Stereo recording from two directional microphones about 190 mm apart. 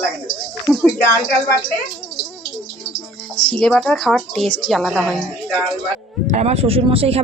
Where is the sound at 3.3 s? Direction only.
5° left (ahead or behind).